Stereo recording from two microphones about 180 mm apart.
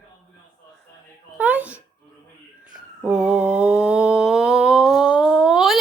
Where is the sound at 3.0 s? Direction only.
5° right (ahead or behind).